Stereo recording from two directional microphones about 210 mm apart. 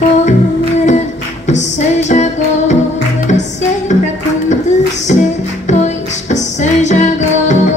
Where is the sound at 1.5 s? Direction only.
35° left (ahead or behind).